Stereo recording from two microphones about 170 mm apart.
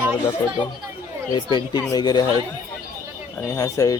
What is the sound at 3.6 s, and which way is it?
Speech, 20° left (ahead or behind).